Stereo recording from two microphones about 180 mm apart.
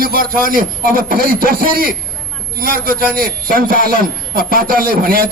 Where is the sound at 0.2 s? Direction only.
50° right (ahead or behind).